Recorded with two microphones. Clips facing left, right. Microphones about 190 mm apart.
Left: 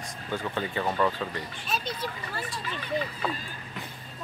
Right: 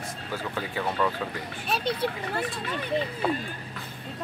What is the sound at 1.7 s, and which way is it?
Speech, 60° right (ahead or behind).